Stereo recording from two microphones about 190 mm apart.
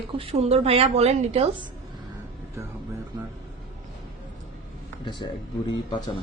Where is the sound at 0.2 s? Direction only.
30° right (ahead or behind).